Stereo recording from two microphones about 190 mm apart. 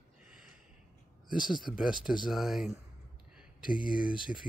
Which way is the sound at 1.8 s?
5° right (ahead or behind).